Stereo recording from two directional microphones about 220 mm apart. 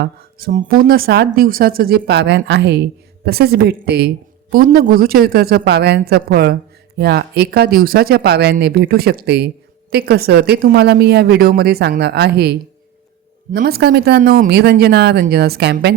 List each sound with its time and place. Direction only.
0.0 s speech: 40° right (ahead or behind)